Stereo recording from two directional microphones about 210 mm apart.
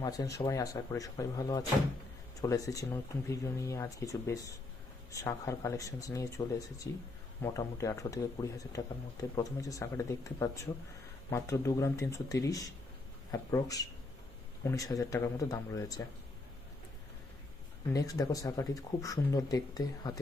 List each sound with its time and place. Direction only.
0.0 s speech: 15° left (ahead or behind)
17.9 s speech: 15° left (ahead or behind)